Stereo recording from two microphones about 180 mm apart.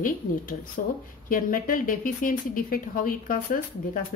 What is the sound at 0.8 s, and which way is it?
Speech, 50° left (ahead or behind).